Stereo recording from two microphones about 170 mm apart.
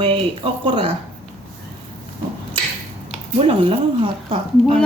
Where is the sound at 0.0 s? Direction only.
30° right (ahead or behind).